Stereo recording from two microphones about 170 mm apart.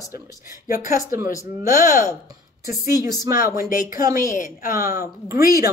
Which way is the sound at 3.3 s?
55° left (ahead or behind).